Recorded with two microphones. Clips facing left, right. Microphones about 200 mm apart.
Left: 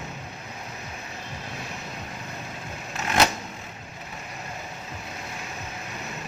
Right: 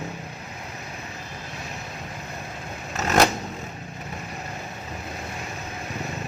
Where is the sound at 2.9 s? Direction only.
40° right (ahead or behind).